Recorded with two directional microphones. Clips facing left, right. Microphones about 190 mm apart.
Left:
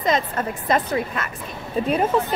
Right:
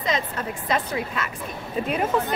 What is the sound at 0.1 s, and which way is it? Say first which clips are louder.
A woman's voice: left 4 dB; 50° left (ahead or behind).